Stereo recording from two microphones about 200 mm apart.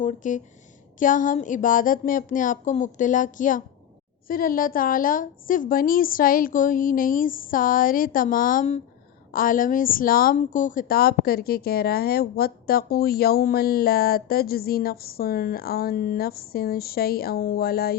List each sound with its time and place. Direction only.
0.0 s a woman's voice: 40° left (ahead or behind)